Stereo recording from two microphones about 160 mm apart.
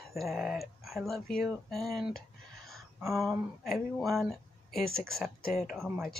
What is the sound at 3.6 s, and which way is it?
Speech, centre (ahead or behind).